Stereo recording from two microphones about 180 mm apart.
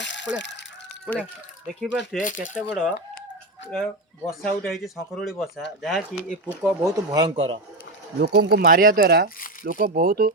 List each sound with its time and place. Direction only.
0.0 s chicken: 85° left
1.0 s speech: 5° left (ahead or behind)
2.1 s speech: 45° left (ahead or behind)
2.6 s speech: 5° right (ahead or behind)
4.3 s speech: centre (ahead or behind)
7.1 s a man's voice: 20° right (ahead or behind)
7.3 s a man's voice: 35° right (ahead or behind)
8.2 s speech: 55° right (ahead or behind)